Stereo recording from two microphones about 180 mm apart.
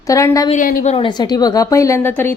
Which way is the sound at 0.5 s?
50° left (ahead or behind).